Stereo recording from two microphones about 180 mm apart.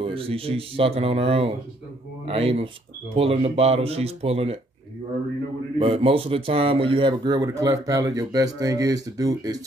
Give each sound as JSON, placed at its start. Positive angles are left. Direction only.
{"t": 0.0, "sound": "speech", "side_deg": -30}
{"t": 5.8, "sound": "speech", "side_deg": -35}